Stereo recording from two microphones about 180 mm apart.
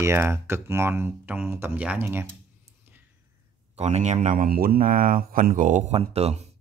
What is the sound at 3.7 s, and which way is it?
Speech, 35° right (ahead or behind).